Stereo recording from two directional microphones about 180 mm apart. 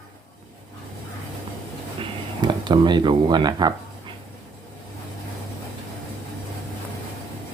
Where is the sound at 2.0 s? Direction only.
25° right (ahead or behind).